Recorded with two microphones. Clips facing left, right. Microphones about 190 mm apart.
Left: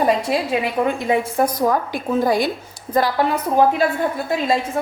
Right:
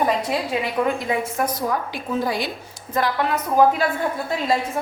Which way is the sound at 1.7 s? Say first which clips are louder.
Left 4 dB; 45° left (ahead or behind).